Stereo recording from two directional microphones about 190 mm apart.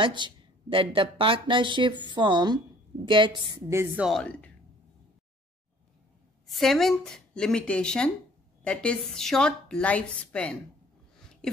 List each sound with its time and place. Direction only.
0.0 s a woman's voice: 25° right (ahead or behind); by 4.2 s 5° right (ahead or behind)
4.2 s speech: 5° left (ahead or behind)
6.4 s a woman's voice: centre (ahead or behind)